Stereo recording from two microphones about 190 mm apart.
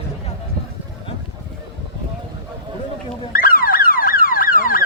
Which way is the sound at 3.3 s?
50° left (ahead or behind).